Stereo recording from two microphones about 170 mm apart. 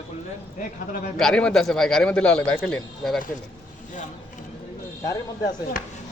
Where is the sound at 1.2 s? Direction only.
5° left (ahead or behind).